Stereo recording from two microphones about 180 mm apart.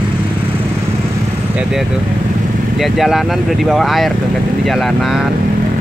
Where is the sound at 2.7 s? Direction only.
Centre (ahead or behind).